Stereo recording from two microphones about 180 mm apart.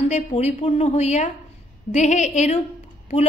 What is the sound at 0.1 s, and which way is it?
A woman's voice, 35° left (ahead or behind).